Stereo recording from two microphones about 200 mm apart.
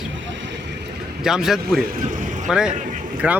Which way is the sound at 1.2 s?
Centre (ahead or behind).